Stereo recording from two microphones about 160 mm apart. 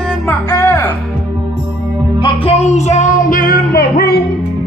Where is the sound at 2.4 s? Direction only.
40° left (ahead or behind); by 4.2 s 75° left (ahead or behind).